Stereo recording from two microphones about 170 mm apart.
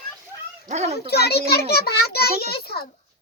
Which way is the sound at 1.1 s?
70° left (ahead or behind).